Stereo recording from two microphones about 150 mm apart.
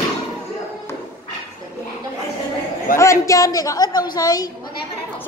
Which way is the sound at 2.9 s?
20° left (ahead or behind).